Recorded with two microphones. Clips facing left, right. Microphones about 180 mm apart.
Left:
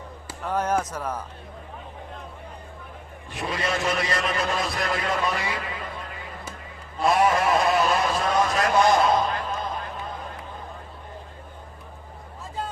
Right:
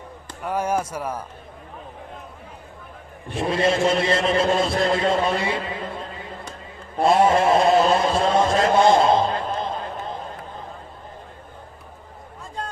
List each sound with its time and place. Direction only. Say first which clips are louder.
0.4 s speech: right 1 dB; 10° right (ahead or behind)
3.3 s a man's voice: right 7 dB; 30° right (ahead or behind)
7.0 s a man's voice: right 4 dB; 25° right (ahead or behind)